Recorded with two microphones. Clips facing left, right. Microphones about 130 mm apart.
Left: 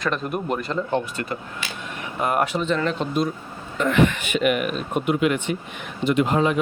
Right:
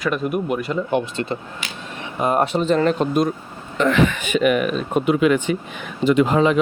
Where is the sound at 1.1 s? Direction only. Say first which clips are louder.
Right 4 dB; 25° right (ahead or behind); by 3.2 s 45° right (ahead or behind).